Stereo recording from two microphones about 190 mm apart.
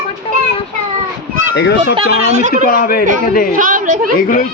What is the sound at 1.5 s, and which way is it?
Speech, 65° left (ahead or behind).